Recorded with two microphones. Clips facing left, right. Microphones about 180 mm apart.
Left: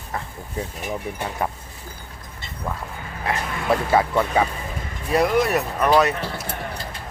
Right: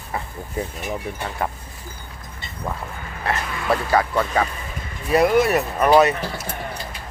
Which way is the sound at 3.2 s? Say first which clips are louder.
Even; 20° left (ahead or behind).